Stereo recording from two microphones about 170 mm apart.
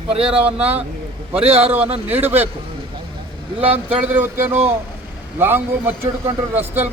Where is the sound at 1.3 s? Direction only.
35° right (ahead or behind).